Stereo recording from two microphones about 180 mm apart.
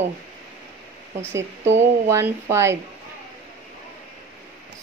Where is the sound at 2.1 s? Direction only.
15° right (ahead or behind).